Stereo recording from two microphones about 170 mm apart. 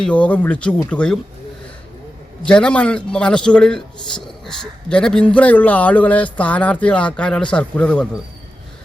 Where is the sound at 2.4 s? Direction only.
5° left (ahead or behind).